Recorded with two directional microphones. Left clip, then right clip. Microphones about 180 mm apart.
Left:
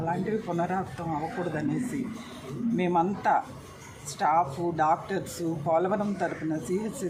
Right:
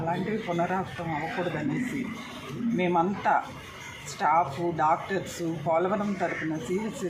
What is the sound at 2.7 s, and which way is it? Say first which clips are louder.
Speech: right 1 dB; 30° left (ahead or behind).